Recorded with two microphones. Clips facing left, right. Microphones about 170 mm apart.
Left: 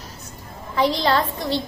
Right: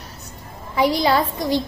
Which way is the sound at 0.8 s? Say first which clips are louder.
Right 2 dB; 10° right (ahead or behind).